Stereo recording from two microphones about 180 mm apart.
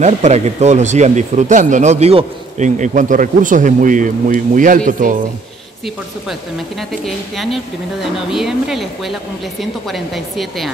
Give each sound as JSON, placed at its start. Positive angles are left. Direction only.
{"t": 0.0, "sound": "speech", "side_deg": -40}
{"t": 6.9, "sound": "speech", "side_deg": 0}